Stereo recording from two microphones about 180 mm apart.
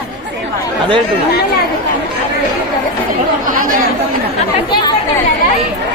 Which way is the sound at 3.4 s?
50° right (ahead or behind).